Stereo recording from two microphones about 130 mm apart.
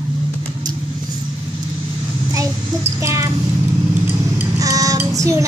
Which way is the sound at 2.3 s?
20° right (ahead or behind).